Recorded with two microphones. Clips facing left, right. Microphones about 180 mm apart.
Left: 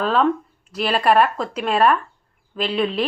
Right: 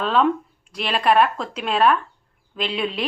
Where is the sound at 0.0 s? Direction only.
5° left (ahead or behind).